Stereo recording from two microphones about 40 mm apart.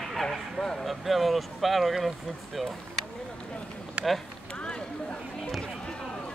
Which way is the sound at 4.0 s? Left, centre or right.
Right.